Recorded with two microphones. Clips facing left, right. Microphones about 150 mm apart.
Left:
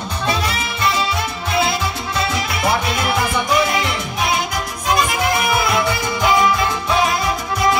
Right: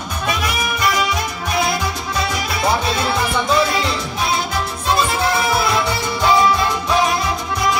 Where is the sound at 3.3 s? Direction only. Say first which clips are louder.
Right 1 dB; 20° left (ahead or behind).